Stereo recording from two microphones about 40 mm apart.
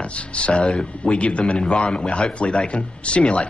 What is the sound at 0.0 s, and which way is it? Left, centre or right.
Speech, left.